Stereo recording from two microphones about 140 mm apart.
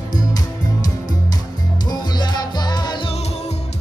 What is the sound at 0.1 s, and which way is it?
Music, 30° left (ahead or behind).